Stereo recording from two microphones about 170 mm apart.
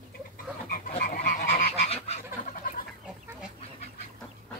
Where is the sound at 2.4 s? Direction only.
50° left (ahead or behind).